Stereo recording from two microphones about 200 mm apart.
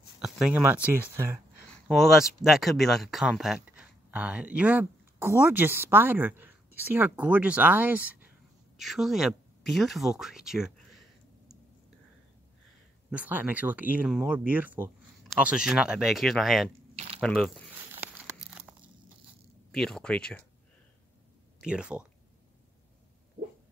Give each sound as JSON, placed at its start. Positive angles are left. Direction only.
{"t": 0.2, "sound": "speech", "side_deg": -5}
{"t": 1.7, "sound": "speech", "side_deg": 0}
{"t": 13.1, "sound": "speech", "side_deg": -10}
{"t": 18.3, "sound": "crumpling", "side_deg": -5}
{"t": 19.7, "sound": "speech", "side_deg": 0}
{"t": 21.5, "sound": "speech", "side_deg": -5}